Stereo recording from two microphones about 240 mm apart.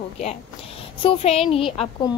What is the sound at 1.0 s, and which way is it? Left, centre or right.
A woman's voice, left.